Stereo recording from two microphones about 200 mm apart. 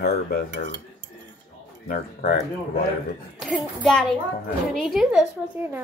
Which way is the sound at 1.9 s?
45° left (ahead or behind).